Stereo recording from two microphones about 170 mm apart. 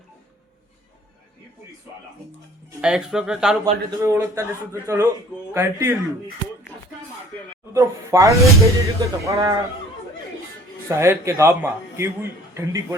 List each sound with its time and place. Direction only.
2.8 s speech: 5° right (ahead or behind)
3.6 s a man's voice: 20° right (ahead or behind)
7.7 s a man's voice: 20° right (ahead or behind)
10.8 s a man's voice: 15° right (ahead or behind)